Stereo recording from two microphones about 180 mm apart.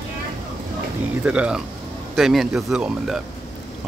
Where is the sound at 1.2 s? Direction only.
5° right (ahead or behind).